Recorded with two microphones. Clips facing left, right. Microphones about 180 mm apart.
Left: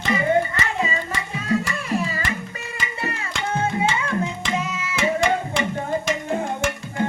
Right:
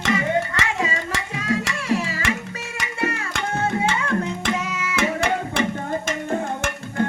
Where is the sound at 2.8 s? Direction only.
70° right (ahead or behind).